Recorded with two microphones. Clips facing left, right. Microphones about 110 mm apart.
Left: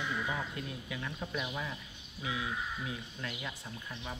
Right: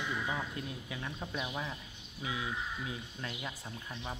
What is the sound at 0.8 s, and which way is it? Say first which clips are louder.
Speech: left 1 dB; 30° right (ahead or behind).